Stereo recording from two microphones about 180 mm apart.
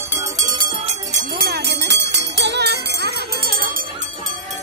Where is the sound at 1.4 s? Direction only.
65° right (ahead or behind).